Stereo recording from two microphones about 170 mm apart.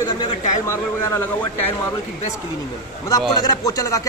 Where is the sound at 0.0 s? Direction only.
15° left (ahead or behind).